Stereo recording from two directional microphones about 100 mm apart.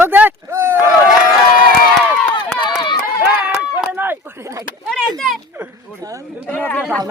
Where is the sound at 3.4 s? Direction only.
15° right (ahead or behind).